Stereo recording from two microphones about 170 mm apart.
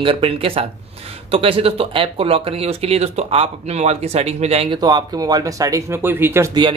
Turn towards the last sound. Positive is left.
turn(degrees=-15)  # may be behind; listen again after turning